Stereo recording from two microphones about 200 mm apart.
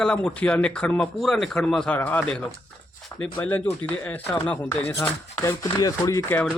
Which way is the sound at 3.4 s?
10° left (ahead or behind).